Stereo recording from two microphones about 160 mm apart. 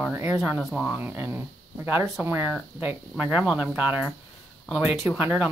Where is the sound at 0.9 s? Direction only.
10° right (ahead or behind).